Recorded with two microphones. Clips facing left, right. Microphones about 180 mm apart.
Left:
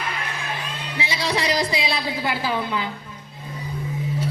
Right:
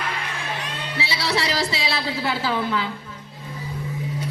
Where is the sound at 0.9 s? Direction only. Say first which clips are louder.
Even; 15° left (ahead or behind).